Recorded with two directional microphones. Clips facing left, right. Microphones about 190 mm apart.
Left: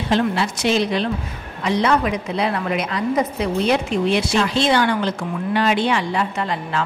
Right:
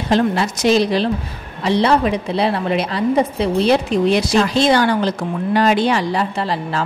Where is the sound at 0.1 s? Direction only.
40° right (ahead or behind).